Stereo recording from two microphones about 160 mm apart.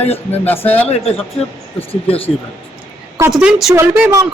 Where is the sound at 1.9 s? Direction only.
35° left (ahead or behind).